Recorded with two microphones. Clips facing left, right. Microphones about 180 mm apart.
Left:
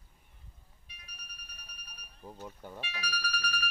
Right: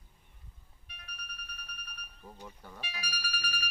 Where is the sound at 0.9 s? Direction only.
60° right (ahead or behind).